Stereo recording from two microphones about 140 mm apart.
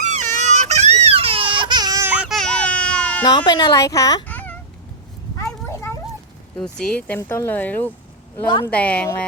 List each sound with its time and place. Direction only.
0.0 s baby cry: 55° right (ahead or behind); by 2.0 s 25° right (ahead or behind)
2.0 s baby cry: 5° right (ahead or behind)
2.4 s sheep: 10° left (ahead or behind)
3.2 s speech: 30° left (ahead or behind)
4.3 s a sound: 10° left (ahead or behind)
6.6 s speech: 5° left (ahead or behind)